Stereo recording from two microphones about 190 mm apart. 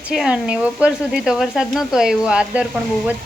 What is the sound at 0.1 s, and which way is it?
Speech, 5° right (ahead or behind).